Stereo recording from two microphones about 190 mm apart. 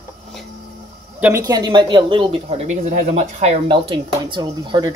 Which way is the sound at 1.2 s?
15° right (ahead or behind).